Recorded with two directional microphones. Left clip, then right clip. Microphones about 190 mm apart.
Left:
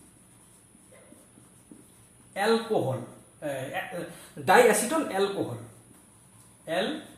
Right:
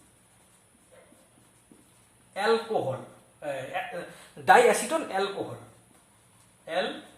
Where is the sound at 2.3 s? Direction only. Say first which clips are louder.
Even; centre (ahead or behind).